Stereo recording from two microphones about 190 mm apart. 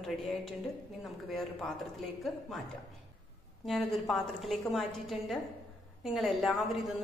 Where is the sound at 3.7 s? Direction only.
Centre (ahead or behind).